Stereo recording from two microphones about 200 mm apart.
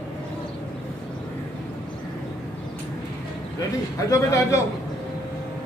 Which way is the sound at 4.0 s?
15° left (ahead or behind).